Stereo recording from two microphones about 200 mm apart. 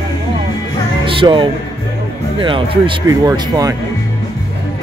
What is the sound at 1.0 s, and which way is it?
Music, 25° right (ahead or behind).